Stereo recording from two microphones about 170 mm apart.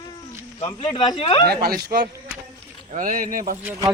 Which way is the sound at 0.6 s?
25° left (ahead or behind).